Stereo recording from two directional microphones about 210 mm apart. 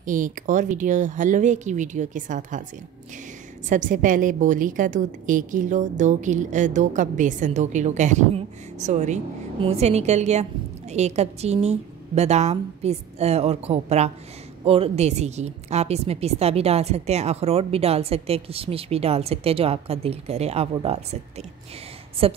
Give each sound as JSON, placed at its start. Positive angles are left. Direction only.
{"t": 0.0, "sound": "a woman's voice", "side_deg": -40}
{"t": 3.6, "sound": "a woman's voice", "side_deg": -40}